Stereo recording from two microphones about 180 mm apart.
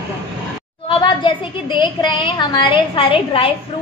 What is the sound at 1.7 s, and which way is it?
A woman's voice, 25° left (ahead or behind).